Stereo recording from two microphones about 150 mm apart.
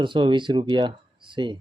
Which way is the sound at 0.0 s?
30° right (ahead or behind).